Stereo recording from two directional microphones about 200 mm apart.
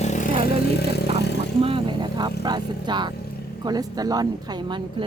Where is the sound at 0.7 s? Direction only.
55° left (ahead or behind).